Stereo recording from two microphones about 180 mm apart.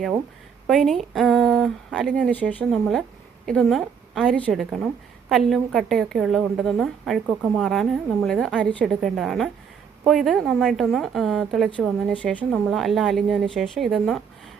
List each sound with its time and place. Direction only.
0.7 s a woman's voice: centre (ahead or behind)